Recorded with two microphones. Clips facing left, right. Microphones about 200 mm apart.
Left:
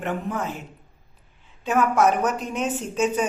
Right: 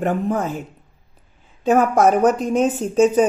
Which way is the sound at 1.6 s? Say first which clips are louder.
Right 5 dB; 40° right (ahead or behind).